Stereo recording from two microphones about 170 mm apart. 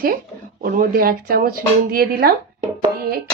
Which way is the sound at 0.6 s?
60° right (ahead or behind).